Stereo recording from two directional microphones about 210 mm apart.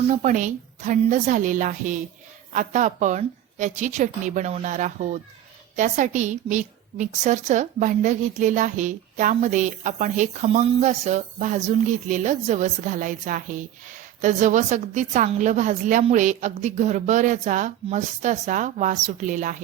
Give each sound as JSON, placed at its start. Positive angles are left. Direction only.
{"t": 0.1, "sound": "a woman's voice", "side_deg": -35}